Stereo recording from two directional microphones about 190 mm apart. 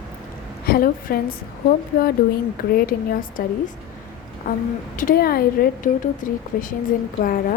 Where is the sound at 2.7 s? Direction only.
50° left (ahead or behind).